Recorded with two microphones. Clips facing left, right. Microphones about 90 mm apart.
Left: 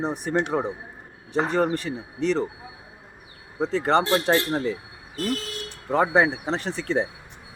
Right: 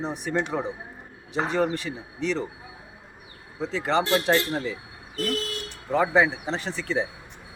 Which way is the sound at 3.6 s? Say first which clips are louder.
Left 3 dB; 45° left (ahead or behind).